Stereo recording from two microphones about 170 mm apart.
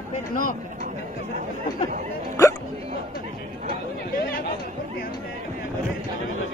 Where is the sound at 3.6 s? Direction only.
55° left (ahead or behind).